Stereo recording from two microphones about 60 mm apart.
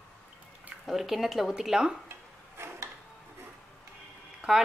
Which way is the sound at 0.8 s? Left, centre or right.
Centre.